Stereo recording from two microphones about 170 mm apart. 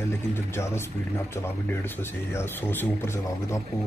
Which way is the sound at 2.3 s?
15° left (ahead or behind).